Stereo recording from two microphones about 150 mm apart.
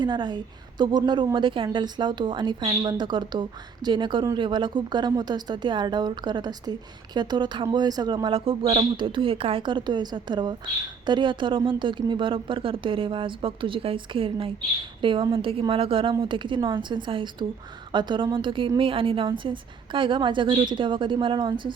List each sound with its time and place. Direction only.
0.0 s speech: 30° right (ahead or behind)